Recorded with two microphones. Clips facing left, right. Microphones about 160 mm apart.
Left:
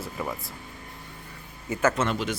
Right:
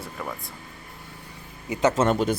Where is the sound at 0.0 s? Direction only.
Centre (ahead or behind).